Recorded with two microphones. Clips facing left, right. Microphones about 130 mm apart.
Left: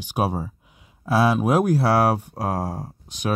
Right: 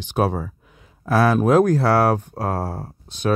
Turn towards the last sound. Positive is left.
turn(degrees=15)  # may be behind; listen again after turning